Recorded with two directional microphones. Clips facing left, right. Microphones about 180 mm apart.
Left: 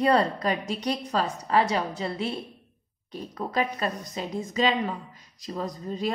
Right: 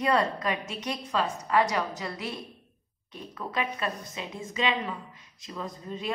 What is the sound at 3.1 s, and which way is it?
A woman's voice, 40° left (ahead or behind).